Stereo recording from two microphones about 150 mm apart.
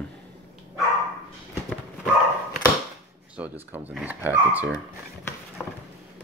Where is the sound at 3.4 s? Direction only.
10° right (ahead or behind).